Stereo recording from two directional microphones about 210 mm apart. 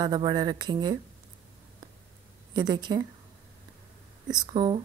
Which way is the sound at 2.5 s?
20° right (ahead or behind).